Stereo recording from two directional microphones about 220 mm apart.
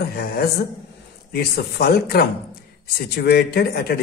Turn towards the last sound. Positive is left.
turn(degrees=45)  # may be behind; listen again after turning